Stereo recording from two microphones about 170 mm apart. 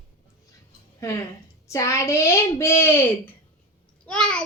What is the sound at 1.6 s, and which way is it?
A child's voice, 20° left (ahead or behind).